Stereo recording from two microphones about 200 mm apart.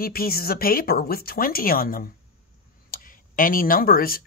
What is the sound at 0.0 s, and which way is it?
Speech, 50° left (ahead or behind).